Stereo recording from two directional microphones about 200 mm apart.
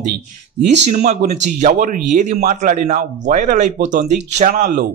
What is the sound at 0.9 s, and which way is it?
A man's voice, 35° right (ahead or behind).